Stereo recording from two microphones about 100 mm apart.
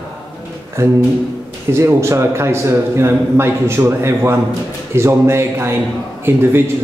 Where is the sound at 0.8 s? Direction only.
25° right (ahead or behind).